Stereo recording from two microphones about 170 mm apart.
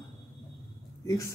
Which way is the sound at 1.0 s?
20° left (ahead or behind).